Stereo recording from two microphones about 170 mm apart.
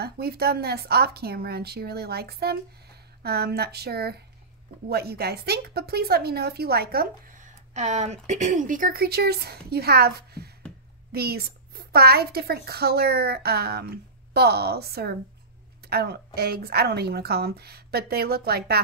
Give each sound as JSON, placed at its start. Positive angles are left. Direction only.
{"t": 0.0, "sound": "a woman's voice", "side_deg": -70}